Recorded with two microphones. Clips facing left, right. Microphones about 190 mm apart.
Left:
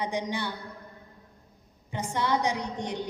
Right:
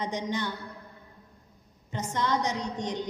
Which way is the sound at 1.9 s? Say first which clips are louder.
Left 1 dB; 10° left (ahead or behind).